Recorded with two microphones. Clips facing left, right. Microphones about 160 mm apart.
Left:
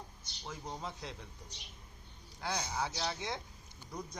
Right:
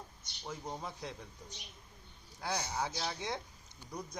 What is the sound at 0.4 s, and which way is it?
Speech, 10° right (ahead or behind).